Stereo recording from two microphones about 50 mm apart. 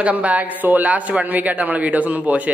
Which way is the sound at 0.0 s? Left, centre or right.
Right.